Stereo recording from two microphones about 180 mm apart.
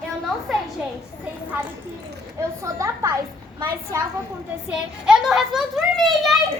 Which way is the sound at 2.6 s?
15° right (ahead or behind).